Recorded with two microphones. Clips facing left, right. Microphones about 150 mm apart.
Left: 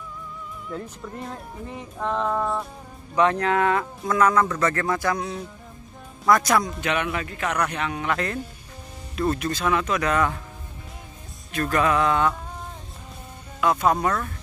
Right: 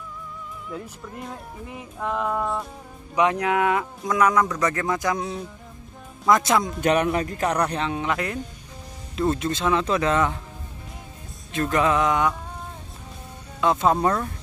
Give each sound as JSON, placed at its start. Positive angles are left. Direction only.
{"t": 0.7, "sound": "speech", "side_deg": -5}
{"t": 3.2, "sound": "speech", "side_deg": -15}
{"t": 6.2, "sound": "speech", "side_deg": -20}
{"t": 6.8, "sound": "speech", "side_deg": -40}
{"t": 11.5, "sound": "speech", "side_deg": -20}
{"t": 13.6, "sound": "speech", "side_deg": -25}